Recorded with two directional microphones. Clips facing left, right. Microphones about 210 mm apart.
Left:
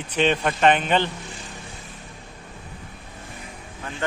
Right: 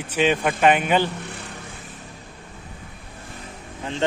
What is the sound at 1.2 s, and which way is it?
Vehicle, 60° right (ahead or behind).